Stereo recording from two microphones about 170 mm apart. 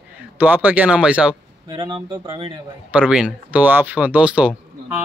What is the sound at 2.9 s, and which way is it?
Speech, 5° right (ahead or behind).